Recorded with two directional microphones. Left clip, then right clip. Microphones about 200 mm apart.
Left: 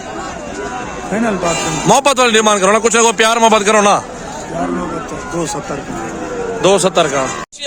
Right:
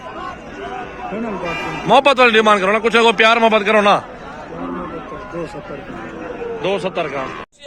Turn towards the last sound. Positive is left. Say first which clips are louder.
# left 8 dB
turn(degrees=30)  # may be behind; listen again after turning